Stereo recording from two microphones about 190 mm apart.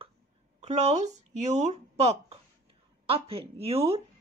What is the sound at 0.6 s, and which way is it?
A woman's voice, 35° right (ahead or behind).